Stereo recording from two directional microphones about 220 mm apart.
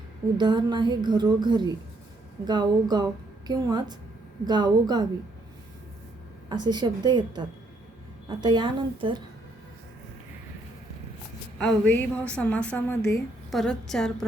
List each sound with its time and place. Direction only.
0.3 s a woman's voice: 20° right (ahead or behind)
6.5 s a woman's voice: 20° right (ahead or behind)
11.5 s a woman's voice: 5° left (ahead or behind)